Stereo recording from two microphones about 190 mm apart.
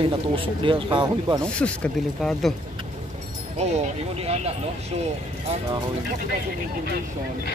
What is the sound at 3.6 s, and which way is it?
Speech, 35° right (ahead or behind).